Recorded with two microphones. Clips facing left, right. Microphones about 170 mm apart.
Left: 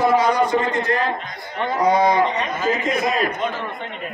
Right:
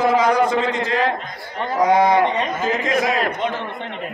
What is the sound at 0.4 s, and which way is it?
Speech, 90° right.